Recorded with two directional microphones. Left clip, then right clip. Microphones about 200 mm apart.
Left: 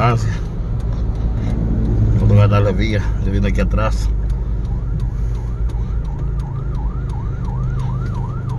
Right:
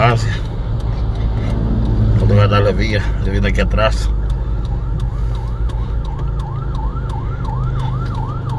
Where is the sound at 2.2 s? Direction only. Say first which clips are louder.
Right 3 dB; 10° left (ahead or behind).